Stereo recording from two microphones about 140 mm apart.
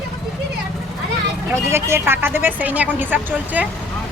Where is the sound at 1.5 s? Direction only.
20° right (ahead or behind).